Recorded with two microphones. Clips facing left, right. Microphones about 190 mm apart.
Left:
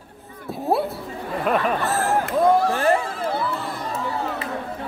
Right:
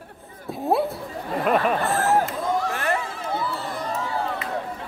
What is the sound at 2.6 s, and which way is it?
Speech, 30° left (ahead or behind).